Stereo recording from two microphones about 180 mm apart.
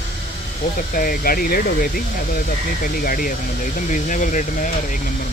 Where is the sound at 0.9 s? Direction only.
55° left (ahead or behind).